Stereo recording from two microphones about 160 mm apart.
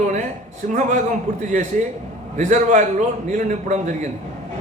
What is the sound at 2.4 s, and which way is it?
A man's voice, 50° right (ahead or behind).